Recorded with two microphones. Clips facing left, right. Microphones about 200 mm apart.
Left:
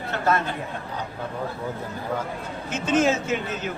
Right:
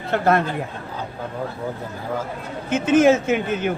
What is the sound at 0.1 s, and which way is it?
Speech, 60° right (ahead or behind).